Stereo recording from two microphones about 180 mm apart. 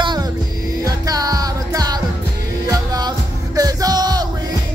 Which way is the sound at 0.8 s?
20° right (ahead or behind).